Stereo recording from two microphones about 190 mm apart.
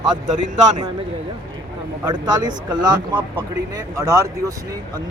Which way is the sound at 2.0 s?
20° right (ahead or behind).